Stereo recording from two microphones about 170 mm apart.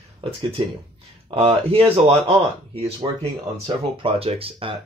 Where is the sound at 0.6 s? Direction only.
30° right (ahead or behind).